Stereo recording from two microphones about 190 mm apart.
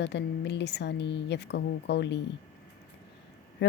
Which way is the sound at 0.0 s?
65° left (ahead or behind).